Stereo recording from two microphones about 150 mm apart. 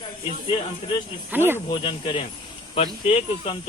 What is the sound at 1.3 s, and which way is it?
Speech, 15° right (ahead or behind).